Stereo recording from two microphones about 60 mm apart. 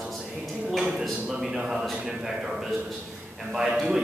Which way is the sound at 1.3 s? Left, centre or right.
Centre.